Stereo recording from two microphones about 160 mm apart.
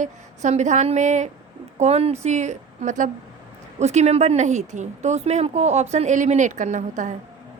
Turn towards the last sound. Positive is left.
turn(degrees=-50)  # may be behind; listen again after turning